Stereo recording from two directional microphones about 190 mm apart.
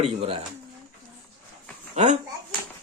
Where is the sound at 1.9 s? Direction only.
40° right (ahead or behind).